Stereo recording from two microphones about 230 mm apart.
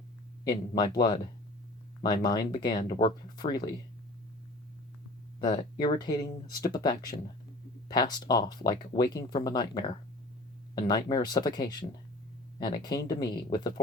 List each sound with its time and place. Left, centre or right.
0.4 s speech: centre
5.8 s speech: centre